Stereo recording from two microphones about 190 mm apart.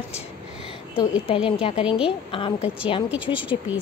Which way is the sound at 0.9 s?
30° left (ahead or behind).